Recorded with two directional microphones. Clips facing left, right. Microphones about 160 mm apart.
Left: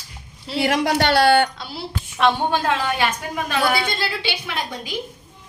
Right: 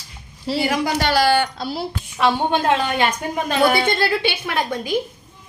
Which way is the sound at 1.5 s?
40° right (ahead or behind).